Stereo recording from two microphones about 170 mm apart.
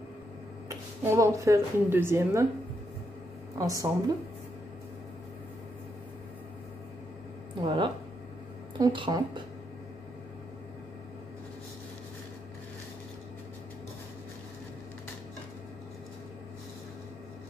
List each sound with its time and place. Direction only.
0.7 s a woman's voice: 20° right (ahead or behind)
3.5 s speech: 20° right (ahead or behind)
7.6 s speech: 30° right (ahead or behind)